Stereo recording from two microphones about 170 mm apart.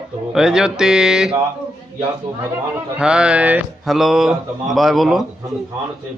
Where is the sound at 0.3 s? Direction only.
5° right (ahead or behind).